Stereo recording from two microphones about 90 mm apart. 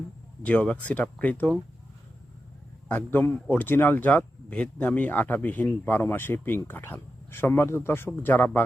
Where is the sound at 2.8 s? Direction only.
15° left (ahead or behind).